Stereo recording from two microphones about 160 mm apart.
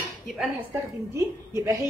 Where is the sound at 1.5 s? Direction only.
20° right (ahead or behind).